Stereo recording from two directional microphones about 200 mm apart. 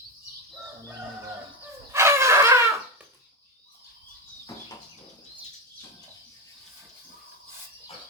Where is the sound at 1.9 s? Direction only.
15° right (ahead or behind).